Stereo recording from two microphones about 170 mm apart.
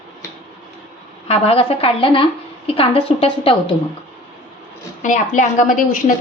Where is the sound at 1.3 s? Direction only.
35° left (ahead or behind).